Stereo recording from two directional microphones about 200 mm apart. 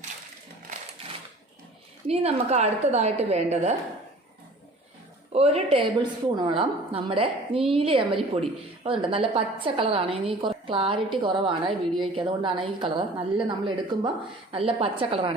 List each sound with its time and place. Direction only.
2.0 s a woman's voice: 30° right (ahead or behind)
5.3 s a woman's voice: 30° right (ahead or behind)